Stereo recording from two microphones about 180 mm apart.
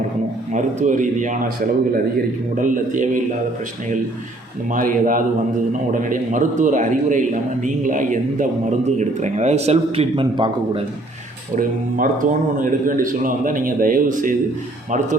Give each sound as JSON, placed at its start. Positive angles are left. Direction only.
{"t": 0.5, "sound": "a man's voice", "side_deg": -45}
{"t": 2.6, "sound": "a man's voice", "side_deg": -45}
{"t": 4.7, "sound": "a man's voice", "side_deg": -50}
{"t": 11.5, "sound": "a man's voice", "side_deg": -50}